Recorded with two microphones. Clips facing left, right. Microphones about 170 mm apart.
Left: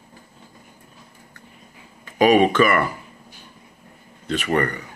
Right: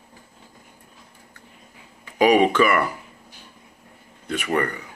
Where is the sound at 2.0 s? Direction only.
15° right (ahead or behind).